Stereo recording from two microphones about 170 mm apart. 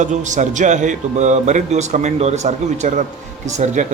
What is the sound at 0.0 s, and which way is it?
Speech, 45° right (ahead or behind).